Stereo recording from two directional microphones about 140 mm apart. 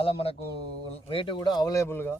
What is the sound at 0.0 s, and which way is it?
A man's voice, 45° left (ahead or behind).